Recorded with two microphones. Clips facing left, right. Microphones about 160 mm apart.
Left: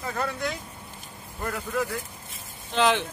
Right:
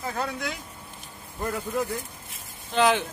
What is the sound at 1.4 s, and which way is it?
Speech, 20° right (ahead or behind).